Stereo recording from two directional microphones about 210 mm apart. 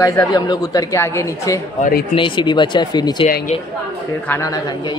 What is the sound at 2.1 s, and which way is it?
Speech, 20° left (ahead or behind).